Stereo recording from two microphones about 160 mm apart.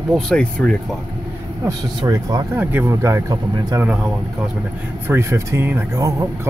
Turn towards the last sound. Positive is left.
turn(degrees=-20)  # may be behind; listen again after turning